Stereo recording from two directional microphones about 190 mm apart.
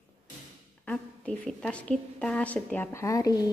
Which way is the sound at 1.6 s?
5° left (ahead or behind).